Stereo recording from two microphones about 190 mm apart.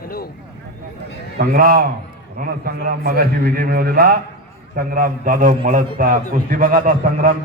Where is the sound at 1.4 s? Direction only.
50° right (ahead or behind).